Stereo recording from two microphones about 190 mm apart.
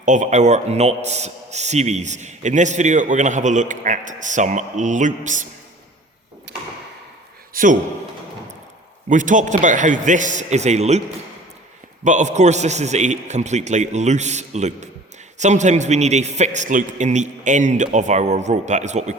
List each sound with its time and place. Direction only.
0.0 s a man's voice: 40° right (ahead or behind)
7.5 s a sound: 45° right (ahead or behind)
9.0 s a man's voice: 40° right (ahead or behind)
12.0 s a man's voice: 40° right (ahead or behind)